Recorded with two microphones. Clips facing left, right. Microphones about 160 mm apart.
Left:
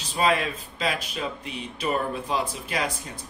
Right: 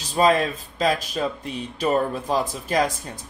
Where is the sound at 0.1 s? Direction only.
40° right (ahead or behind).